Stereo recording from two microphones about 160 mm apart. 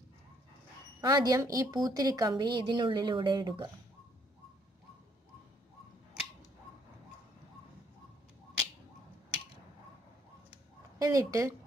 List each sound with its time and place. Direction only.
1.0 s speech: 25° right (ahead or behind)
11.0 s speech: 20° right (ahead or behind)